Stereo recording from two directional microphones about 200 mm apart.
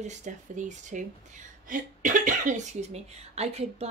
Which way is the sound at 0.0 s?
35° right (ahead or behind).